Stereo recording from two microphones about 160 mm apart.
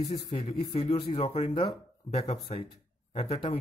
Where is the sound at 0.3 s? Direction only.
40° left (ahead or behind).